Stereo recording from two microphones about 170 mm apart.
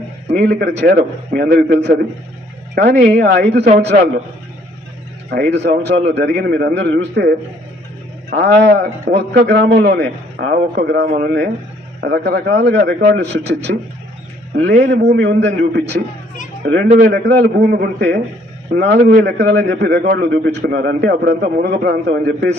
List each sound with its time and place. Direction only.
0.3 s a man's voice: 75° right (ahead or behind)
5.3 s a man's voice: 75° right (ahead or behind)
14.8 s a man's voice: 90° right
17.0 s a man's voice: 65° right (ahead or behind); by 22.4 s 80° right